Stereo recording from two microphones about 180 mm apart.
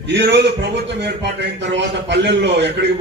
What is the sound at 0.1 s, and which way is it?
A man's voice, 75° right (ahead or behind).